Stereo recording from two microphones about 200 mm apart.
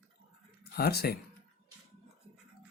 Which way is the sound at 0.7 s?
50° left (ahead or behind).